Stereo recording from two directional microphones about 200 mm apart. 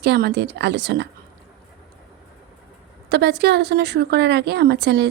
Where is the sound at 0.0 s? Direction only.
55° right (ahead or behind).